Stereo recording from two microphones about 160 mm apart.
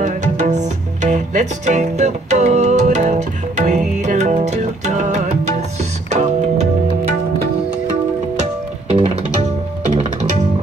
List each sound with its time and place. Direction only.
0.0 s music: 50° right (ahead or behind)
9.8 s music: 50° right (ahead or behind)